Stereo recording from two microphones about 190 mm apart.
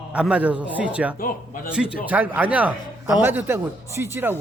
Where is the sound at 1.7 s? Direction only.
5° right (ahead or behind).